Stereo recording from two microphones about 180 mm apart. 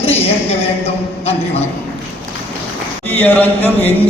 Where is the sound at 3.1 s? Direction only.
10° left (ahead or behind).